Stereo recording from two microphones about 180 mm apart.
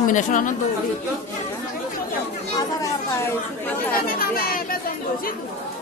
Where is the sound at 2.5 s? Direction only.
20° left (ahead or behind).